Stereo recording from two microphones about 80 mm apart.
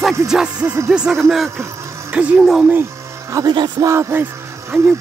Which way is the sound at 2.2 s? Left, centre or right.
Centre.